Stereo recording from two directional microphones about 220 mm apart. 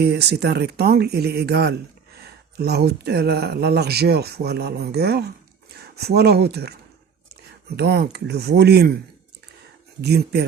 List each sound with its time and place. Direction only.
0.0 s speech: 50° right (ahead or behind)
7.8 s speech: 45° right (ahead or behind)
10.0 s speech: 50° right (ahead or behind)